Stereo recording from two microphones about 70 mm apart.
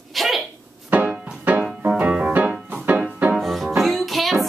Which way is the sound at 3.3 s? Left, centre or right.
Centre.